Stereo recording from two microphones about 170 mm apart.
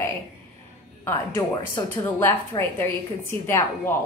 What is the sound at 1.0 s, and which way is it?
A woman's voice, 15° left (ahead or behind).